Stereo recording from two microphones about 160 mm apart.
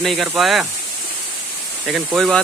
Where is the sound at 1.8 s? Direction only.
5° right (ahead or behind).